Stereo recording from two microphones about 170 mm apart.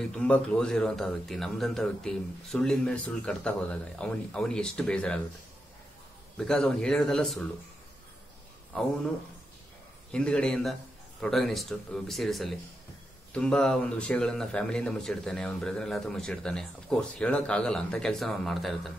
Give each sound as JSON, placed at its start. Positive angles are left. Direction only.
{"t": 0.2, "sound": "speech", "side_deg": 5}
{"t": 6.3, "sound": "speech", "side_deg": 5}
{"t": 10.1, "sound": "speech", "side_deg": 5}